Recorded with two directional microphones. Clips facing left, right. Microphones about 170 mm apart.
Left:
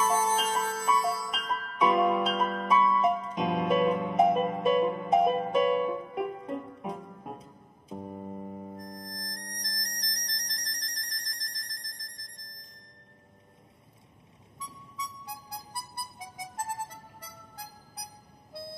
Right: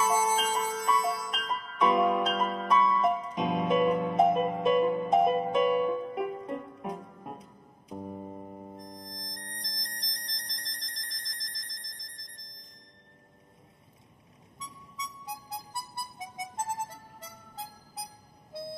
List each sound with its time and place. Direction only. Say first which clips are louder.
0.0 s music: even; 10° right (ahead or behind)
0.7 s music: left 1 dB; centre (ahead or behind)
7.9 s keyboard: even; centre (ahead or behind)
9.4 s music: left 1 dB; 25° right (ahead or behind)
9.9 s music: left 3 dB; centre (ahead or behind)
10.2 s music: left 3 dB; 25° right (ahead or behind)
10.5 s music: left 3 dB; centre (ahead or behind)
14.7 s harmonica: left 1 dB; centre (ahead or behind)
15.2 s music: right 2 dB; 20° right (ahead or behind)